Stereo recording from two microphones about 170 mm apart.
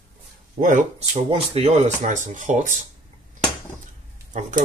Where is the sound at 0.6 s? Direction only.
45° right (ahead or behind).